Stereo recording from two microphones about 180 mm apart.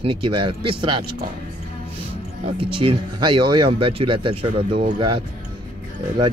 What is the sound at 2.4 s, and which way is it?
Speech, 30° right (ahead or behind).